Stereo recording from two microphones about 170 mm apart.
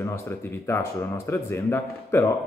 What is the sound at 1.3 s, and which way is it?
A man's voice, 15° left (ahead or behind).